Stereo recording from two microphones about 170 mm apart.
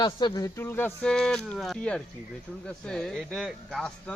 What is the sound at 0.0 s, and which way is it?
Speech, 25° left (ahead or behind).